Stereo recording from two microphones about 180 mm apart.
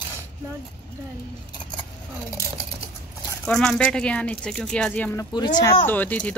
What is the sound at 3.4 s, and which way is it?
Speech, 5° left (ahead or behind).